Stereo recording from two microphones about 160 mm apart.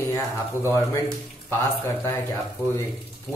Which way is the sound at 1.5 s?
15° left (ahead or behind).